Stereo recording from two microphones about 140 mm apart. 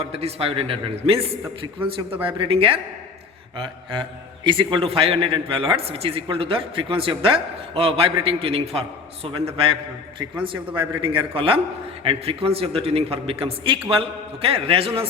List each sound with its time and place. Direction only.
0.0 s a man's voice: 45° right (ahead or behind)
4.4 s a man's voice: 35° right (ahead or behind)
10.2 s a man's voice: 35° right (ahead or behind)